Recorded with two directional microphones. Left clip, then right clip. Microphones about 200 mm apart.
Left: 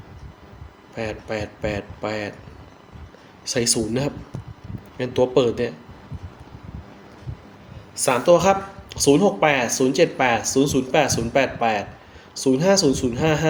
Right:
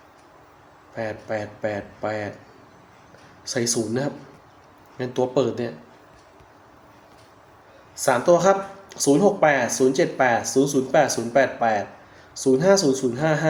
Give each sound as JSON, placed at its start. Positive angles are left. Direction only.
{"t": 0.9, "sound": "speech", "side_deg": 25}
{"t": 3.4, "sound": "speech", "side_deg": 25}
{"t": 7.9, "sound": "speech", "side_deg": 25}